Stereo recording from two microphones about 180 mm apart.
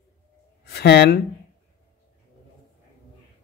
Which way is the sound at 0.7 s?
65° left (ahead or behind).